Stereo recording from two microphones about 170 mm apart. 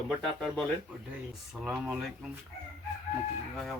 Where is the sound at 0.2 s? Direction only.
5° left (ahead or behind).